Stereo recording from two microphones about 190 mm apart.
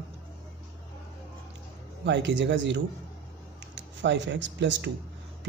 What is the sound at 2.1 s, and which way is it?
A man's voice, 70° right (ahead or behind).